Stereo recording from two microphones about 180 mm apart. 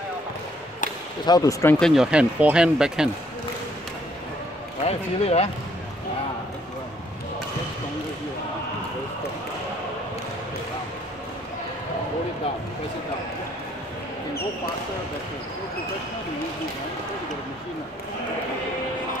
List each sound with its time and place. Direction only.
1.2 s speech: 20° left (ahead or behind)
1.8 s speech: centre (ahead or behind)
4.8 s speech: 35° left (ahead or behind)